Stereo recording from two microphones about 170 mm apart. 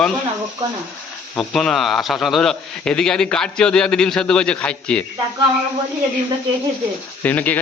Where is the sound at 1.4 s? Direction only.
Centre (ahead or behind).